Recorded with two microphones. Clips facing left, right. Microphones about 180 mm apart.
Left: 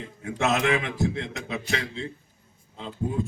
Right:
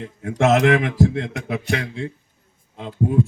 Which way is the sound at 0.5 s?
70° right (ahead or behind).